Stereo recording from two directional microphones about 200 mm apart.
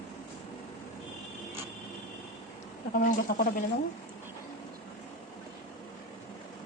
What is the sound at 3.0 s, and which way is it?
Speech, 45° left (ahead or behind).